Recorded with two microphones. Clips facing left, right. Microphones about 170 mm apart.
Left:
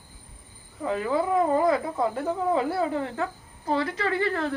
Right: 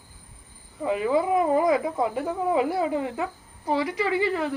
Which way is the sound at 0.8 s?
10° right (ahead or behind).